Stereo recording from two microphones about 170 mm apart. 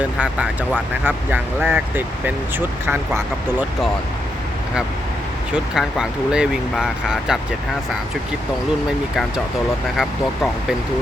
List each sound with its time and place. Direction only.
0.0 s speech: 5° right (ahead or behind)
5.5 s speech: 5° right (ahead or behind)
10.0 s speech: centre (ahead or behind)